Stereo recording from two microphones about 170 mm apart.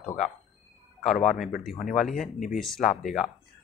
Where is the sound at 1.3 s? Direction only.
Centre (ahead or behind).